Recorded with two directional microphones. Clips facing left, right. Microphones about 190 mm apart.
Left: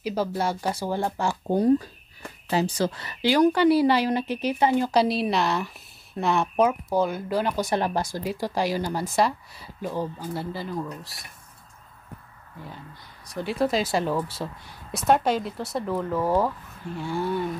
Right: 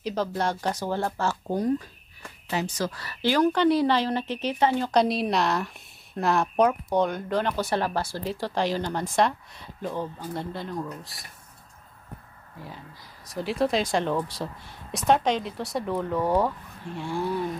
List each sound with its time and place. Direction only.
0.0 s speech: 10° left (ahead or behind)
1.5 s speech: 30° left (ahead or behind); by 11.2 s centre (ahead or behind)
13.3 s speech: centre (ahead or behind)